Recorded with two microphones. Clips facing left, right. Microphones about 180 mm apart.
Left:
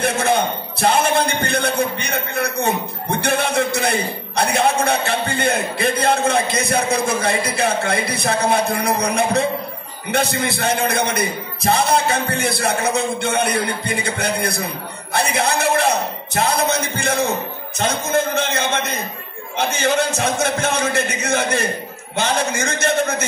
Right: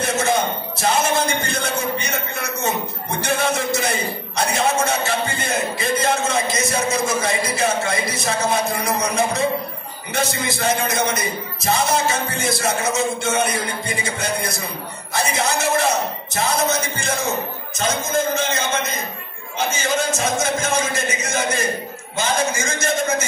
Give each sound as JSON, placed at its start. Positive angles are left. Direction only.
{"t": 0.0, "sound": "a man's voice", "side_deg": 60}